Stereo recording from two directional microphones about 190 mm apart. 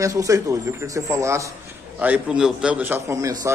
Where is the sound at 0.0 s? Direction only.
15° right (ahead or behind).